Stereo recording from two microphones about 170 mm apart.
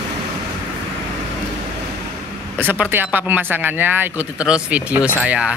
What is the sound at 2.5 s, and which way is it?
Speech, 10° right (ahead or behind).